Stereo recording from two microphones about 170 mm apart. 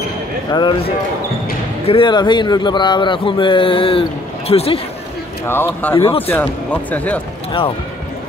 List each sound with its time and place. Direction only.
0.5 s a man's voice: 25° left (ahead or behind)
5.5 s speech: 10° left (ahead or behind)
5.9 s a man's voice: 35° left (ahead or behind)
6.2 s speech: 10° left (ahead or behind)